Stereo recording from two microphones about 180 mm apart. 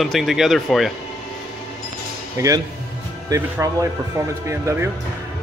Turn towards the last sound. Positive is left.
turn(degrees=-15)  # may be behind; listen again after turning